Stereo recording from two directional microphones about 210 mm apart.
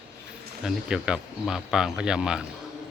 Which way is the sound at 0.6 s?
5° right (ahead or behind).